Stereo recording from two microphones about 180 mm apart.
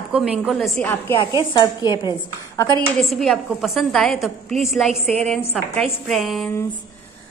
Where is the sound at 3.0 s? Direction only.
Centre (ahead or behind).